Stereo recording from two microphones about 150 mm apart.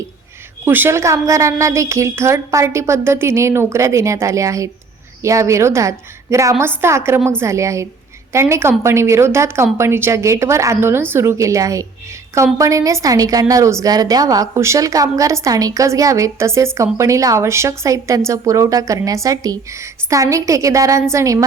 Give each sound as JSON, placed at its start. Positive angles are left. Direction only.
{"t": 0.6, "sound": "a woman's voice", "side_deg": -15}